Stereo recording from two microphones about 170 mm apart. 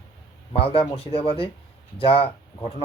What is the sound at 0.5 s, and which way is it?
Speech, 35° left (ahead or behind).